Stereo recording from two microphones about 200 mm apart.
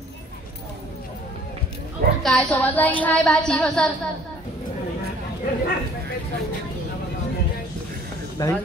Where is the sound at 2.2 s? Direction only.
5° left (ahead or behind).